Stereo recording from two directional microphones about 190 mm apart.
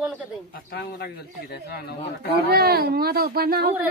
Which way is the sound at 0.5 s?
60° left (ahead or behind).